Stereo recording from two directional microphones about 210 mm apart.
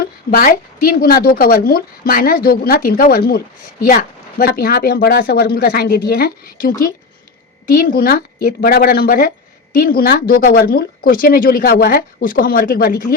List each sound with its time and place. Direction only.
0.0 s a woman's voice: 45° left (ahead or behind)